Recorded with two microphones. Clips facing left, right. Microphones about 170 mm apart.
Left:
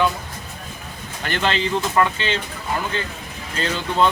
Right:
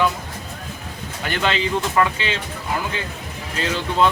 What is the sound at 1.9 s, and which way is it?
Speech, centre (ahead or behind).